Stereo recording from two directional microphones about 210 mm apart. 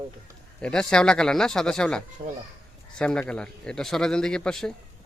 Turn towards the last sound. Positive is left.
turn(degrees=5)  # may be behind; listen again after turning